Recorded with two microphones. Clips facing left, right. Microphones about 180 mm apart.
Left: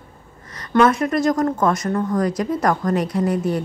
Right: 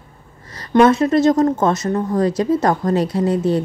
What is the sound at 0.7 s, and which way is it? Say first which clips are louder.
Speech: right 4 dB; 25° right (ahead or behind).